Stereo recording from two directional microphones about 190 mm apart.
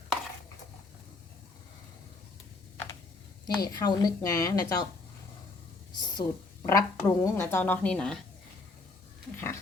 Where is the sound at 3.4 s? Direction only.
20° left (ahead or behind).